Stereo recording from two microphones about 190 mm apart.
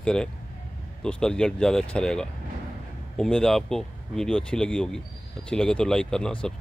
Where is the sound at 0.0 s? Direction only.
5° left (ahead or behind).